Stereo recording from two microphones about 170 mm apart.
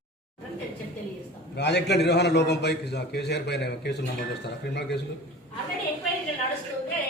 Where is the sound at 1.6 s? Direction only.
85° left.